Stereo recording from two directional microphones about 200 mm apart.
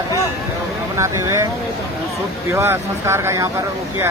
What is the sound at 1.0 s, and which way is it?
Speech, 15° right (ahead or behind).